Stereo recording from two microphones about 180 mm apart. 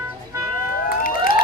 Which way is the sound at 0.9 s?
50° left (ahead or behind).